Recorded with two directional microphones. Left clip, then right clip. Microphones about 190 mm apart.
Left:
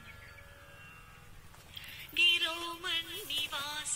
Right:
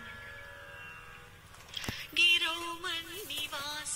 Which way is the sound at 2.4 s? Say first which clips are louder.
Right 2 dB; 25° right (ahead or behind).